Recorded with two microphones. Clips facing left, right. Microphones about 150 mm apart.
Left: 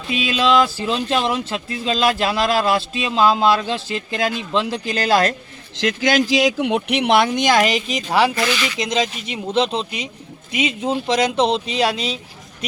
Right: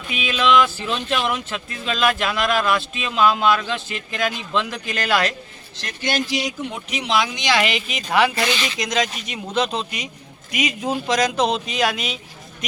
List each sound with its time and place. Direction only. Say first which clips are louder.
0.1 s speech: left 2 dB; 35° left (ahead or behind)
5.7 s speech: left 7 dB; 90° left; by 8.3 s 35° left (ahead or behind)
8.4 s speech: left 2 dB; 25° right (ahead or behind)
8.8 s speech: left 2 dB; 25° left (ahead or behind)